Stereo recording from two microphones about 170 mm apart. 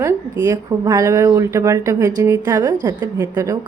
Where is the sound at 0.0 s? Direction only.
15° right (ahead or behind).